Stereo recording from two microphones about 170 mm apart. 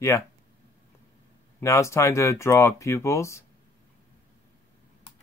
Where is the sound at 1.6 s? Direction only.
15° left (ahead or behind).